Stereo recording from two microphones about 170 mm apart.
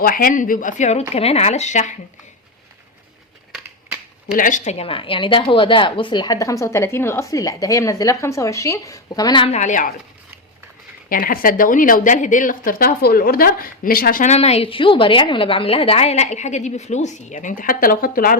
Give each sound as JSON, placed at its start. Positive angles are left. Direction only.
{"t": 0.0, "sound": "speech", "side_deg": 55}
{"t": 4.3, "sound": "speech", "side_deg": 50}
{"t": 9.5, "sound": "speech", "side_deg": 45}
{"t": 11.1, "sound": "speech", "side_deg": 55}